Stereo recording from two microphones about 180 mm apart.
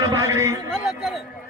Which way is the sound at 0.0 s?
20° right (ahead or behind).